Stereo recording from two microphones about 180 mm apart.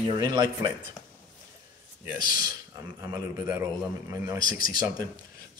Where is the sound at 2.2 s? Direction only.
50° left (ahead or behind).